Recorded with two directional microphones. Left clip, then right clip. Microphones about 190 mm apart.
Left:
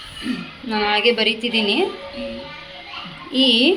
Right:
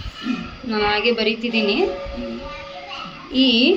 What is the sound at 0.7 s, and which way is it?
A woman's voice, 15° left (ahead or behind).